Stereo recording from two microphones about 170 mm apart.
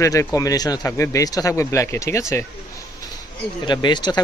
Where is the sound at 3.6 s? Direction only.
25° left (ahead or behind).